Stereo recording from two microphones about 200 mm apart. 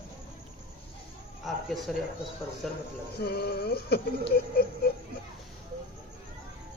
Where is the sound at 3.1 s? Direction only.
55° left (ahead or behind).